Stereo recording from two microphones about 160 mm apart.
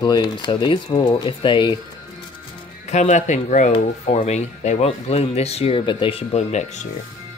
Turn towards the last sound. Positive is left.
turn(degrees=45)  # may be behind; listen again after turning